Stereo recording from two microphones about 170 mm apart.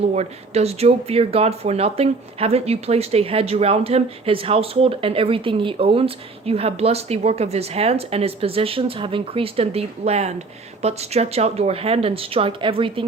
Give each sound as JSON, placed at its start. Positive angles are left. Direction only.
{"t": 0.0, "sound": "speech", "side_deg": -40}